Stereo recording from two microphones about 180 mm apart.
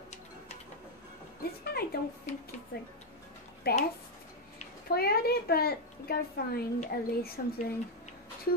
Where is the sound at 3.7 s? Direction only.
60° left (ahead or behind).